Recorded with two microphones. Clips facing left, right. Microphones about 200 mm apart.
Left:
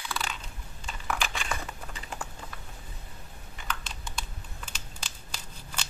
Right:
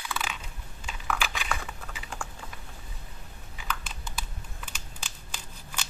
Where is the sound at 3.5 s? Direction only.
5° right (ahead or behind).